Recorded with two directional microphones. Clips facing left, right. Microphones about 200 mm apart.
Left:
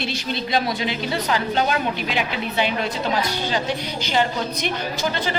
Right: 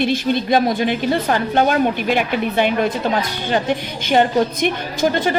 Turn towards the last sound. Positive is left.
turn(degrees=-50)  # may be behind; listen again after turning